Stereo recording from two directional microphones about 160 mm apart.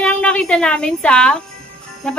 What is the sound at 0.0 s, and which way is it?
A woman's voice, 5° left (ahead or behind).